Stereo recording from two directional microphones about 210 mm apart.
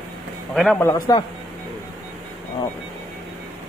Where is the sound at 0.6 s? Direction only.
Centre (ahead or behind).